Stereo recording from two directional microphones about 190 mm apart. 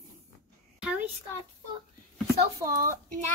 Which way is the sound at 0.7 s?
5° right (ahead or behind).